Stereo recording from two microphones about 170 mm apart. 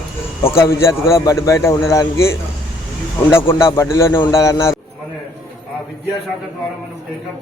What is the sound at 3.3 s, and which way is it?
A man's voice, 15° left (ahead or behind).